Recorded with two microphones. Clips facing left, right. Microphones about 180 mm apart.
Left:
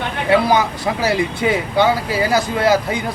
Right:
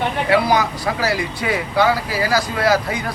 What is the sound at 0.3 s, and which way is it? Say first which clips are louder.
Speech: left 3 dB; 25° left (ahead or behind).